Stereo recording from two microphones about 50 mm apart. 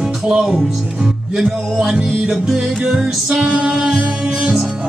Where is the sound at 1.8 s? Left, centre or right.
Centre.